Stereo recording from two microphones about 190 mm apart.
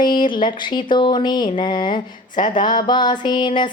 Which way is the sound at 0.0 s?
25° left (ahead or behind).